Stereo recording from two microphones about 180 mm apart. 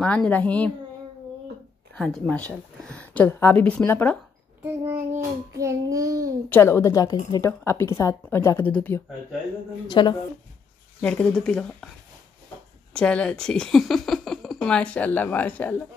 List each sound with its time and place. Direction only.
0.0 s speech: 10° left (ahead or behind)
2.0 s speech: centre (ahead or behind)
4.6 s child singing: 15° right (ahead or behind)
6.5 s speech: 15° left (ahead or behind)
9.8 s speech: 25° left (ahead or behind)
11.0 s speech: 5° left (ahead or behind)
12.9 s speech: 5° left (ahead or behind)